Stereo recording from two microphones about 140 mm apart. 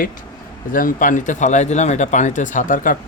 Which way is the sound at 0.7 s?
75° left (ahead or behind).